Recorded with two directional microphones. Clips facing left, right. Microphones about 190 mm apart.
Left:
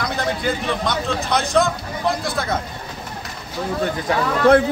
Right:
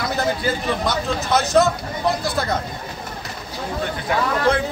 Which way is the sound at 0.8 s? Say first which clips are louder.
Even; 5° right (ahead or behind).